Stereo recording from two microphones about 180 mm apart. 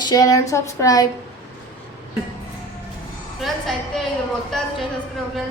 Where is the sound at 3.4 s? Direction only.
Centre (ahead or behind).